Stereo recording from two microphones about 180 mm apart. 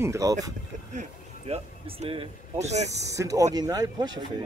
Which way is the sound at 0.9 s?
35° right (ahead or behind).